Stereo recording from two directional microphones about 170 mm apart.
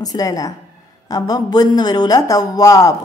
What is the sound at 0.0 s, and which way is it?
Speech, 20° left (ahead or behind).